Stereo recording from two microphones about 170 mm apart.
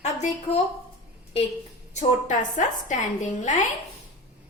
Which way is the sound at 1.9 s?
50° left (ahead or behind).